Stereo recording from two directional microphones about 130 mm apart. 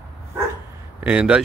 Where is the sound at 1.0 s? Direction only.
10° right (ahead or behind).